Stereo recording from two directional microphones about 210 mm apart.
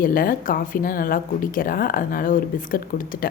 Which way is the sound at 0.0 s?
45° left (ahead or behind).